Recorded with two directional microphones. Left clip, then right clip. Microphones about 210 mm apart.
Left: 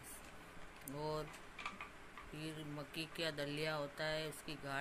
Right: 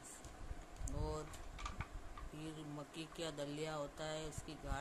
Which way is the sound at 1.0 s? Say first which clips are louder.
Left 3 dB; 5° right (ahead or behind).